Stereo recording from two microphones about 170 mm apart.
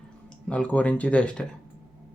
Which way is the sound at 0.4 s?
5° left (ahead or behind).